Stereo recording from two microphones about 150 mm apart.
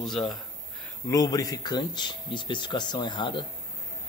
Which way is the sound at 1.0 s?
25° left (ahead or behind).